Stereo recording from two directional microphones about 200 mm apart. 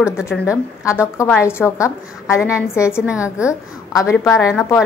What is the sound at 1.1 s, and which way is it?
A woman's voice, 10° left (ahead or behind).